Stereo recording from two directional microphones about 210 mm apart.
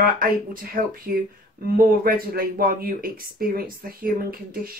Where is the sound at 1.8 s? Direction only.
45° right (ahead or behind).